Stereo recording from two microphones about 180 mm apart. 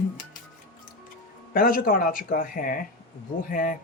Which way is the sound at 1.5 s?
50° left (ahead or behind).